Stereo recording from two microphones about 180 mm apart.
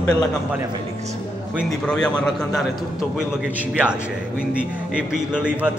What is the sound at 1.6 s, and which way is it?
A man's voice, 5° left (ahead or behind).